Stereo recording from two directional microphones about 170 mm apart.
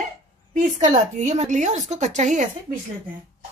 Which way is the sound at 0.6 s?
50° right (ahead or behind).